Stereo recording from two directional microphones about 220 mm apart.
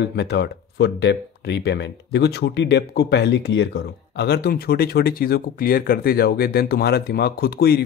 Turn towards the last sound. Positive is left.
turn(degrees=45)  # may be behind; listen again after turning